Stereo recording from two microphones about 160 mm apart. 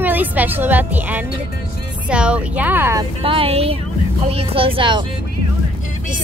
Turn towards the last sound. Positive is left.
turn(degrees=-30)  # may be behind; listen again after turning